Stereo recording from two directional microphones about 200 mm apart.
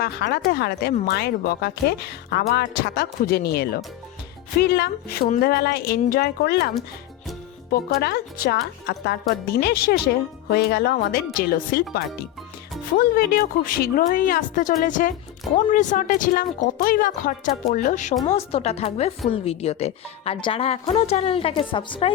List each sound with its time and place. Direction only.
0.0 s speech: 50° left (ahead or behind)
7.7 s a woman's voice: 50° left (ahead or behind); by 22.1 s 25° left (ahead or behind)